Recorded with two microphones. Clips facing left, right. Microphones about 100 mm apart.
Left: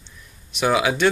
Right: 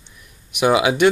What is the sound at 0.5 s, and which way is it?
Speech, 15° right (ahead or behind).